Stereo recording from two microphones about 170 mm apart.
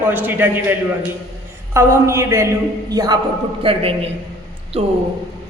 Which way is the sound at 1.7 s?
15° right (ahead or behind).